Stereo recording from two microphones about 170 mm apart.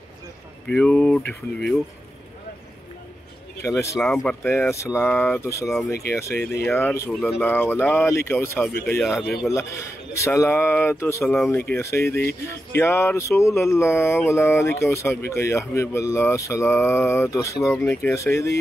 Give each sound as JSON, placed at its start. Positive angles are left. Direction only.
{"t": 0.7, "sound": "speech", "side_deg": 5}
{"t": 4.0, "sound": "speech", "side_deg": 5}
{"t": 7.2, "sound": "speech", "side_deg": 0}
{"t": 7.4, "sound": "speech", "side_deg": 10}
{"t": 11.3, "sound": "speech", "side_deg": 5}
{"t": 11.7, "sound": "speech", "side_deg": 15}